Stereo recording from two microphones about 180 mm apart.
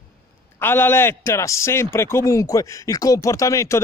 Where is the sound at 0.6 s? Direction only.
10° left (ahead or behind).